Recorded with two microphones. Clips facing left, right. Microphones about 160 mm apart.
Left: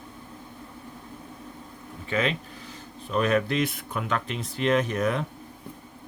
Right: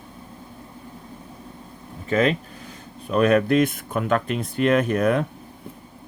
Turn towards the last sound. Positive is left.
turn(degrees=-55)  # may be behind; listen again after turning